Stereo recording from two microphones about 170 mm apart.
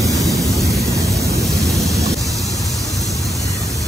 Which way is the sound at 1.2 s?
20° right (ahead or behind).